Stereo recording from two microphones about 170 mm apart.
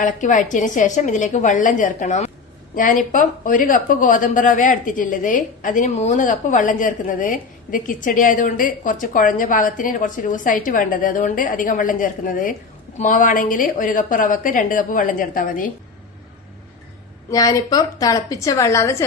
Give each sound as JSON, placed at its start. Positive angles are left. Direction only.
{"t": 0.0, "sound": "a woman's voice", "side_deg": 50}
{"t": 17.3, "sound": "a woman's voice", "side_deg": 20}